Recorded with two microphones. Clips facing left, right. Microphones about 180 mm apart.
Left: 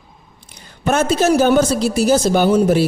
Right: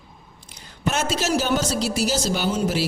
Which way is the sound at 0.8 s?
55° left (ahead or behind).